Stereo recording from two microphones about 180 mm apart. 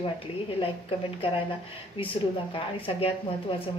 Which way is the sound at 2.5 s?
30° left (ahead or behind).